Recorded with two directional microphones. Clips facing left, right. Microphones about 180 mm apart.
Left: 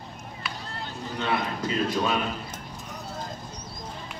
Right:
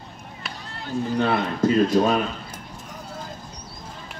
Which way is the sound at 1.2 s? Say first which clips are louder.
Right 5 dB; 40° right (ahead or behind).